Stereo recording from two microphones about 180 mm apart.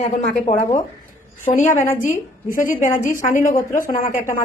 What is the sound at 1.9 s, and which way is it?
A woman's voice, 45° left (ahead or behind).